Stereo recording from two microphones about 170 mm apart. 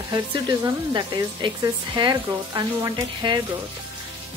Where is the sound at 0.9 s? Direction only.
25° right (ahead or behind).